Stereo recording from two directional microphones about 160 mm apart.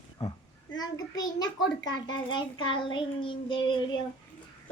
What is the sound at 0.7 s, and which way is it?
A child's voice, 25° left (ahead or behind).